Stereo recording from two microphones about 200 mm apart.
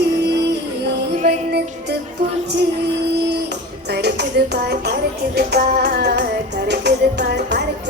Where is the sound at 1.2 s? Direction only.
55° right (ahead or behind).